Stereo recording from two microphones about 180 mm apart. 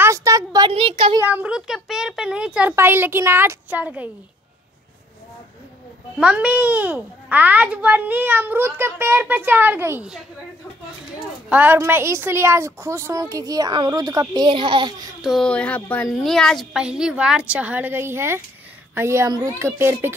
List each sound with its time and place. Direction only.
0.0 s a sound: 15° right (ahead or behind)
1.2 s a woman's voice: 10° right (ahead or behind)
6.1 s a child's voice: 5° right (ahead or behind)
11.4 s a child's voice: 10° right (ahead or behind); by 15.0 s 25° right (ahead or behind)
15.2 s a woman's voice: 5° left (ahead or behind); by 20.2 s 15° right (ahead or behind)